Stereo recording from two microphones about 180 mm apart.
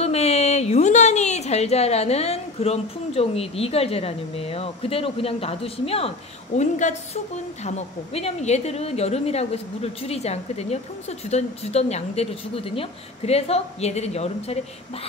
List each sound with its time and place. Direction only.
0.0 s a woman's voice: 35° left (ahead or behind)